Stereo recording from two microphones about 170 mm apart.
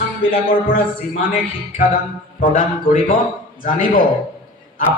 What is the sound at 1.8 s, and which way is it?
A man's voice, 55° left (ahead or behind).